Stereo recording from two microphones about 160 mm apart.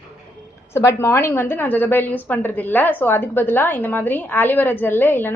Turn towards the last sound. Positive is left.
turn(degrees=15)  # may be behind; listen again after turning